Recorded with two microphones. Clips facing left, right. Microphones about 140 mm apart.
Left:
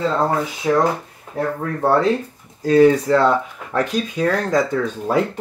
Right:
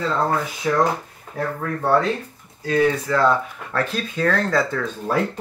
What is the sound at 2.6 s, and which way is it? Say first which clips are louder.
Speech: left 7 dB; 35° left (ahead or behind).